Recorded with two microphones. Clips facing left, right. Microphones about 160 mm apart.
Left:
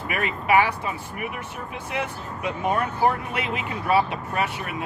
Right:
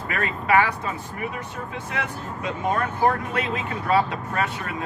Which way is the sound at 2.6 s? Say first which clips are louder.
Even; 15° left (ahead or behind).